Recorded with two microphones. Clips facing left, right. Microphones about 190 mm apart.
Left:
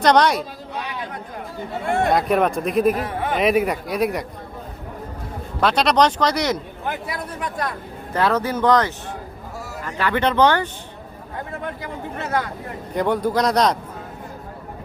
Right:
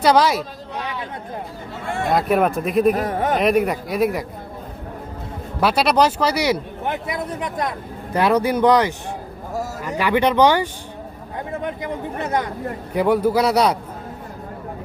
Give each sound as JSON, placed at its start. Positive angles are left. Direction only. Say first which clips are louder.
{"t": 0.0, "sound": "speech", "louder": "even", "side_deg": -5}
{"t": 2.0, "sound": "speech", "louder": "right 2 dB", "side_deg": 0}
{"t": 2.9, "sound": "a man's voice", "louder": "right 4 dB", "side_deg": -45}
{"t": 3.3, "sound": "speech", "louder": "left 1 dB", "side_deg": 0}
{"t": 5.5, "sound": "speech", "louder": "even", "side_deg": -10}
{"t": 6.8, "sound": "a man's voice", "louder": "right 3 dB", "side_deg": -20}
{"t": 12.9, "sound": "speech", "louder": "right 3 dB", "side_deg": -10}